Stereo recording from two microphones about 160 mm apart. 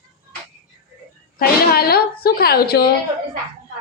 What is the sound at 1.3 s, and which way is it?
A woman's voice, 70° left (ahead or behind).